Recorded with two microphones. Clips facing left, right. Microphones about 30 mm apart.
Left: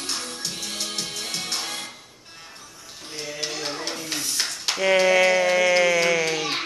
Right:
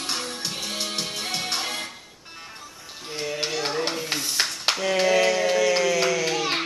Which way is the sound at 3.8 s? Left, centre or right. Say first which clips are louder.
Right 4 dB; right.